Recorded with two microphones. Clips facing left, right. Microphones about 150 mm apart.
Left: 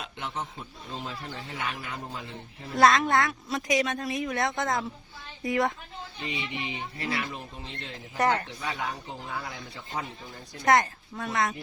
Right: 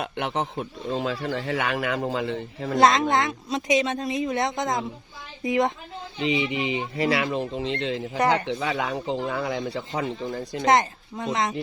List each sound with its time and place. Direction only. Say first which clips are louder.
0.0 s speech: right 8 dB; 70° right (ahead or behind); by 2.7 s 90° right
2.7 s speech: right 2 dB; 20° right (ahead or behind)
6.1 s speech: right 11 dB; 90° right
8.5 s speech: right 7 dB; 70° right (ahead or behind); by 10.6 s 90° right
10.7 s speech: right 2 dB; 20° right (ahead or behind)